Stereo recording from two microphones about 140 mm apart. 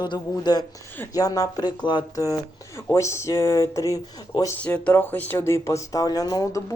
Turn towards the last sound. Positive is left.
turn(degrees=25)  # may be behind; listen again after turning